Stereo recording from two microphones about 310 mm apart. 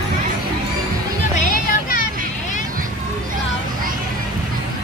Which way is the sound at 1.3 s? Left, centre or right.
Left.